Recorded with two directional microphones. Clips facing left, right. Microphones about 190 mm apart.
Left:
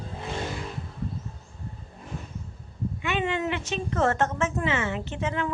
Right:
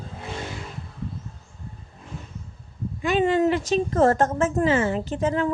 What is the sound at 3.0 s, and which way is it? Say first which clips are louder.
A woman's voice: right 8 dB; 35° right (ahead or behind).